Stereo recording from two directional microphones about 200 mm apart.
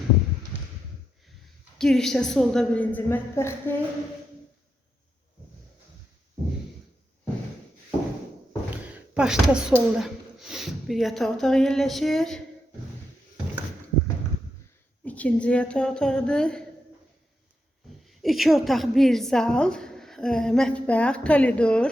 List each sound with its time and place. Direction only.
1.8 s a woman's voice: centre (ahead or behind)
8.7 s speech: 5° right (ahead or behind)
15.0 s a woman's voice: 5° left (ahead or behind)
18.0 s a woman's voice: centre (ahead or behind)